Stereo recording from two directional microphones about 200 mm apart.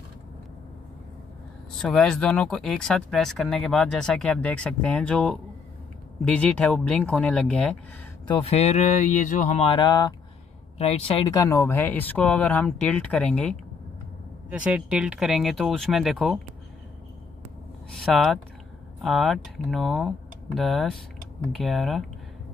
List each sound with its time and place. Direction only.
1.8 s speech: 5° left (ahead or behind)
8.5 s speech: 30° left (ahead or behind); by 13.5 s 5° left (ahead or behind)
14.5 s speech: 5° right (ahead or behind)
17.9 s speech: centre (ahead or behind)